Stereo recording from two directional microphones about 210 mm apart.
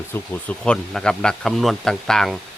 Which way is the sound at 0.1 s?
5° left (ahead or behind).